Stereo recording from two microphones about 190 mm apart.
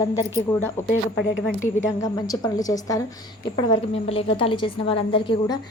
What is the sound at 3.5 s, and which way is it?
A woman's voice, 30° left (ahead or behind).